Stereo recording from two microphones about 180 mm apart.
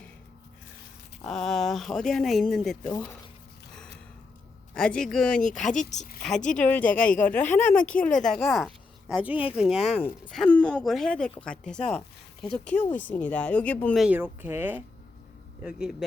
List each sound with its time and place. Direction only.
1.2 s speech: centre (ahead or behind)
4.7 s speech: 5° left (ahead or behind)
5.9 s a woman's voice: 40° left (ahead or behind)
6.7 s speech: 10° left (ahead or behind)
9.7 s a woman's voice: 35° left (ahead or behind)
10.0 s speech: 5° left (ahead or behind)
14.0 s speech: 10° right (ahead or behind)